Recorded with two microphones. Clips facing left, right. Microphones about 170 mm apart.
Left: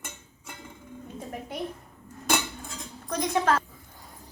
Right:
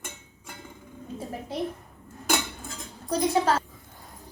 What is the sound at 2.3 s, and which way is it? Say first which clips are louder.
Cutlery: even; centre (ahead or behind).